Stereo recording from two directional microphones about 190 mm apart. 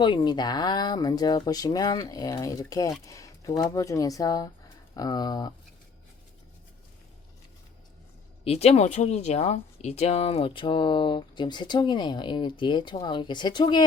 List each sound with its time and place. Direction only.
0.0 s speech: 25° left (ahead or behind)
3.1 s a sound: 15° left (ahead or behind)
3.6 s speech: 15° left (ahead or behind)
8.4 s speech: 30° left (ahead or behind)